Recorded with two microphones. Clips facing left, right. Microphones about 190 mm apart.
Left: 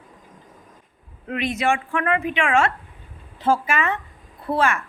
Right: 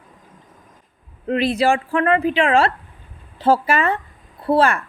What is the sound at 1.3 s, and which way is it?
A woman's voice, 30° right (ahead or behind).